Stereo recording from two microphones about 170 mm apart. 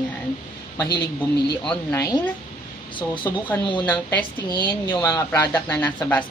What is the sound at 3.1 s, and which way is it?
Speech, 10° left (ahead or behind).